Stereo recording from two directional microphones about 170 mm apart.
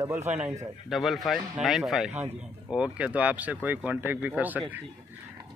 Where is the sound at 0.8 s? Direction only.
Centre (ahead or behind).